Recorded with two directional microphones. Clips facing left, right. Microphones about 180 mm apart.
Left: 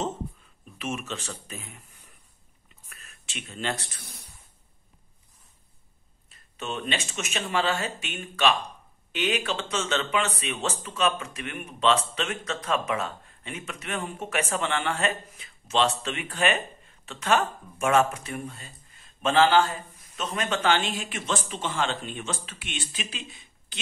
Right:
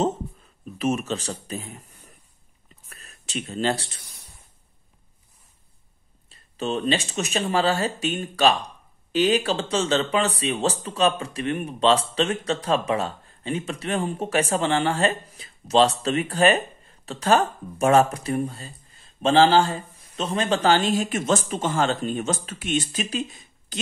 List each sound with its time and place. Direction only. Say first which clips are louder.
0.7 s speech: right 8 dB; 40° right (ahead or behind)
2.9 s speech: right 10 dB; 35° right (ahead or behind)
6.2 s speech: right 7 dB; 35° right (ahead or behind)